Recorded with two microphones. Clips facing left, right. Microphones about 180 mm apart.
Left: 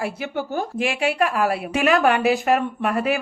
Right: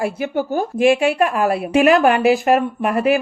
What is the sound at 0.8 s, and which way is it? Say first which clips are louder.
A woman's voice: right 8 dB; 30° right (ahead or behind).